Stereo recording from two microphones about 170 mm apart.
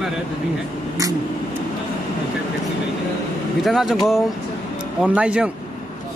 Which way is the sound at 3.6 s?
Centre (ahead or behind).